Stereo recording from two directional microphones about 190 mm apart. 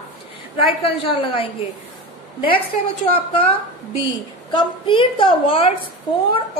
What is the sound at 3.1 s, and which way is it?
Speech, 30° left (ahead or behind).